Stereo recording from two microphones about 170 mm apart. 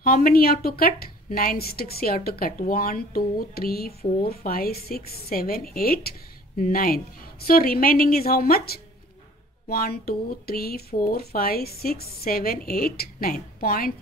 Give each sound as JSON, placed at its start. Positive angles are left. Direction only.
{"t": 0.0, "sound": "a woman's voice", "side_deg": 55}